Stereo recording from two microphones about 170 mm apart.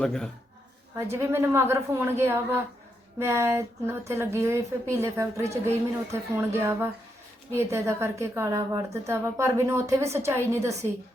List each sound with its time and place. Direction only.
0.0 s a man's voice: 5° left (ahead or behind)
0.9 s speech: 15° right (ahead or behind)